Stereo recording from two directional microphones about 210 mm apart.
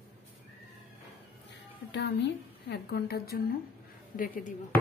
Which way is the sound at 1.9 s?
55° left (ahead or behind).